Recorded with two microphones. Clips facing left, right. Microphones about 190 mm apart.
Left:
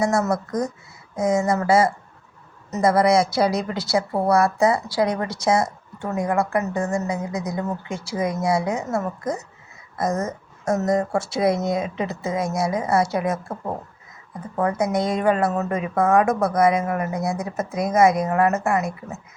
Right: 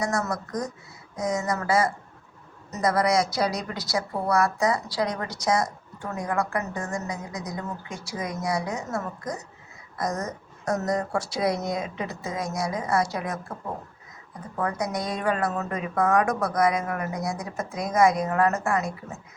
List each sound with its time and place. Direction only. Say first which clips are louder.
0.0 s a woman's voice: left 6 dB; 25° left (ahead or behind)